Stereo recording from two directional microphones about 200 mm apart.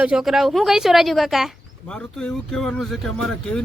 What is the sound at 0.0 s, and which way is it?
Speech, 5° right (ahead or behind).